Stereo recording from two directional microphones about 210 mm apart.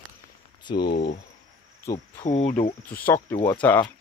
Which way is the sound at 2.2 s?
35° left (ahead or behind).